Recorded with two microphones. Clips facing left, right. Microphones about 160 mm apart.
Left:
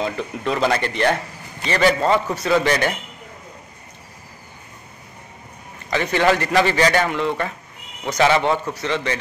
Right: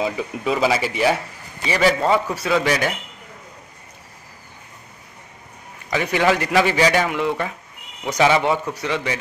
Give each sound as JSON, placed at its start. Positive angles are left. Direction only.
{"t": 0.0, "sound": "speech", "side_deg": -5}
{"t": 5.9, "sound": "a man's voice", "side_deg": -10}